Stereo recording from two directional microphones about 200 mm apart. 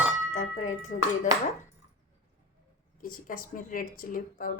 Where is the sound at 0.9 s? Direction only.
35° left (ahead or behind).